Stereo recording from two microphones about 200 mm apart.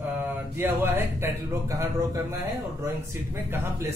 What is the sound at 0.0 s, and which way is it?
A man's voice, 10° right (ahead or behind).